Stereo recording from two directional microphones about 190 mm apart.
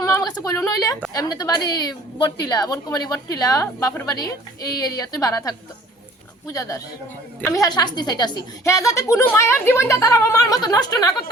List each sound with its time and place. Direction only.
0.0 s a woman's voice: 20° left (ahead or behind)